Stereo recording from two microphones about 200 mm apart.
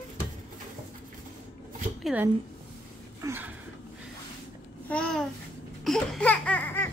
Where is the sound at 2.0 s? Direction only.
10° right (ahead or behind).